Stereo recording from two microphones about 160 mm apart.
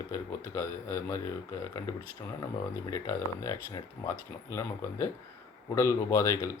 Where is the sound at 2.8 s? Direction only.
20° left (ahead or behind).